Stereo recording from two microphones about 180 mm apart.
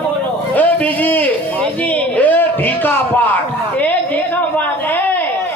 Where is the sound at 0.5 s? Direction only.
10° left (ahead or behind).